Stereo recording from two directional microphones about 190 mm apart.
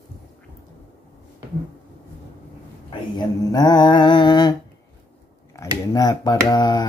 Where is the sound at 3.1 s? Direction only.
20° left (ahead or behind).